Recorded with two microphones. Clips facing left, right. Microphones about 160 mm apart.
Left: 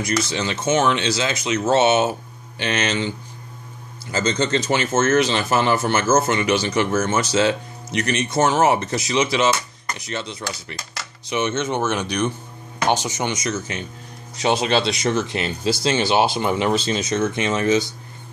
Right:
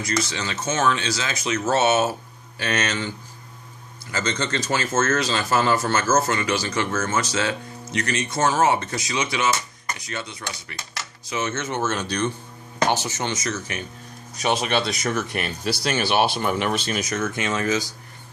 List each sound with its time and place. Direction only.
0.0 s speech: 25° left (ahead or behind)